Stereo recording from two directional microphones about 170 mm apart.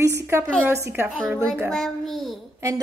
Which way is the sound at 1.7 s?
Centre (ahead or behind).